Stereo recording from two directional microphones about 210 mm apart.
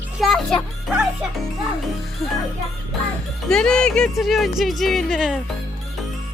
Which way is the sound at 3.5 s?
5° left (ahead or behind).